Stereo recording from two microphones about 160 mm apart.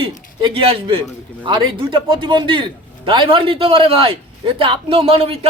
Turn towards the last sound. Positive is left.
turn(degrees=-40)  # may be behind; listen again after turning